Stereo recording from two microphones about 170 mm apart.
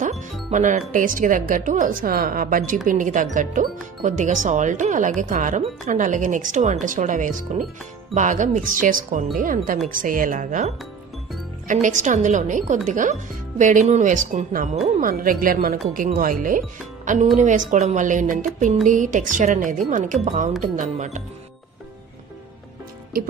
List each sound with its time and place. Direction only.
0.0 s a woman's voice: 45° right (ahead or behind)